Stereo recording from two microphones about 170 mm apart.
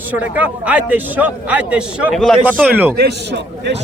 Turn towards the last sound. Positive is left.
turn(degrees=-85)